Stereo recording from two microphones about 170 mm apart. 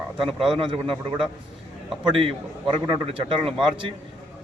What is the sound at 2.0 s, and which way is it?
A man's voice, 30° right (ahead or behind).